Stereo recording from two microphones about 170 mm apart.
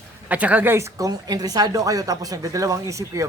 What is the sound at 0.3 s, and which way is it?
A woman's voice, 10° right (ahead or behind).